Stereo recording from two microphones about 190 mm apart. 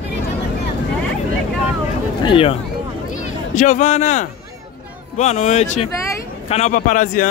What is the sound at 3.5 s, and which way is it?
A man's voice, 40° left (ahead or behind).